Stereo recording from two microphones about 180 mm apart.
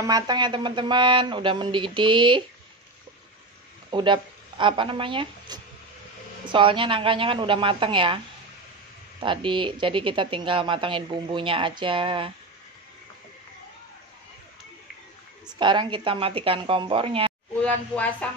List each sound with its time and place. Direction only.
0.0 s a woman's voice: 20° right (ahead or behind)
3.9 s a woman's voice: 25° right (ahead or behind)
9.2 s a woman's voice: 25° right (ahead or behind)
15.6 s a woman's voice: 25° right (ahead or behind)
17.6 s speech: 10° left (ahead or behind)